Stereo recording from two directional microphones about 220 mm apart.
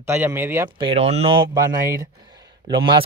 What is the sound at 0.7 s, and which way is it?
Speech, 25° right (ahead or behind).